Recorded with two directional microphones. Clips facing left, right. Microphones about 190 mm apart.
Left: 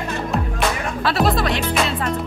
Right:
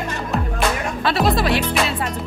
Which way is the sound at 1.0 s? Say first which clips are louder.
Even; centre (ahead or behind).